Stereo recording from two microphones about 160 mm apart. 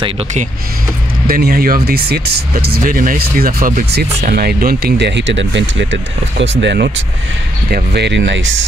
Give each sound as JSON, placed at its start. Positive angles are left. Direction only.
{"t": 1.2, "sound": "speech", "side_deg": -70}
{"t": 4.3, "sound": "speech", "side_deg": -70}